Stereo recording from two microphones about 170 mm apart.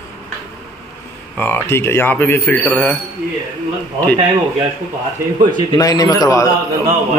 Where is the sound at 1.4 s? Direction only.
10° left (ahead or behind).